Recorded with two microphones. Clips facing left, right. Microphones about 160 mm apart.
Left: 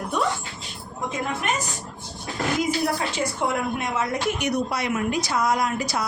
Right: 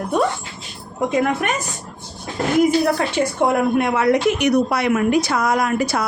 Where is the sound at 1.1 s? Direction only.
65° right (ahead or behind).